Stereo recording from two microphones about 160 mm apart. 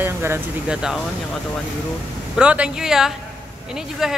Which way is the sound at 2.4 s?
5° right (ahead or behind).